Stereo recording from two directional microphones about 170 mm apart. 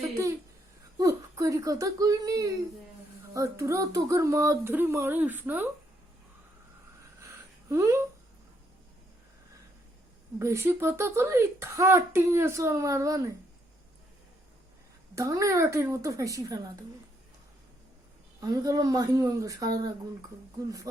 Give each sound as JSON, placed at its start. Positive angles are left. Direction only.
{"t": 0.9, "sound": "speech", "side_deg": -20}
{"t": 7.7, "sound": "speech", "side_deg": -15}
{"t": 10.3, "sound": "speech", "side_deg": -15}
{"t": 15.1, "sound": "speech", "side_deg": -20}
{"t": 18.3, "sound": "speech", "side_deg": -20}